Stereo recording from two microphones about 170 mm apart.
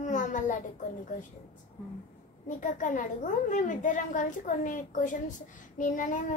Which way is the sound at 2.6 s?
50° left (ahead or behind).